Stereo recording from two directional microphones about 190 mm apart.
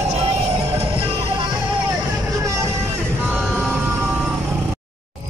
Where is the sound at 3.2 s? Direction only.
5° right (ahead or behind).